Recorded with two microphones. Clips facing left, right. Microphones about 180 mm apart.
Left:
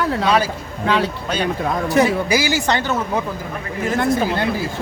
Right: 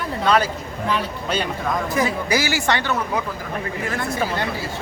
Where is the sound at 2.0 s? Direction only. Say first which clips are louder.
Left 7 dB; 70° left (ahead or behind).